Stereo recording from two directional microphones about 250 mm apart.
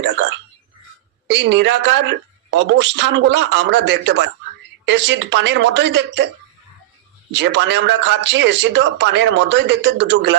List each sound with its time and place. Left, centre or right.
1.3 s speech: right
7.3 s speech: right